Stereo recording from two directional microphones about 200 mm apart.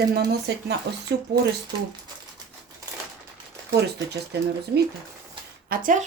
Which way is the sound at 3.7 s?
55° right (ahead or behind).